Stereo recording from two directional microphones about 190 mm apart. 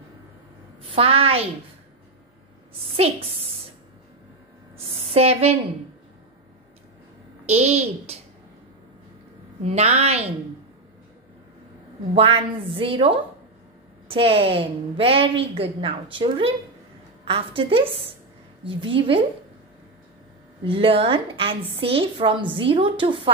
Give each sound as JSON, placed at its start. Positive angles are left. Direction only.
{"t": 0.9, "sound": "a child's voice", "side_deg": -30}
{"t": 2.8, "sound": "a woman's voice", "side_deg": -30}
{"t": 4.9, "sound": "a sound", "side_deg": -30}
{"t": 7.4, "sound": "a child's voice", "side_deg": -35}
{"t": 9.7, "sound": "a child's voice", "side_deg": -35}
{"t": 12.2, "sound": "a woman's voice", "side_deg": -30}
{"t": 20.6, "sound": "a woman's voice", "side_deg": -30}